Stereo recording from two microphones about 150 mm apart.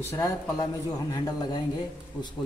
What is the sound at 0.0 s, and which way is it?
Speech, 15° left (ahead or behind).